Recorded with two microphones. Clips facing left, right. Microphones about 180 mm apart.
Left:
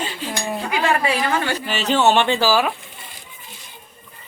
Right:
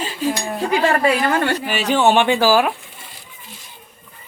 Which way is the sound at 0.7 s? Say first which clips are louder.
Right 4 dB; 50° right (ahead or behind).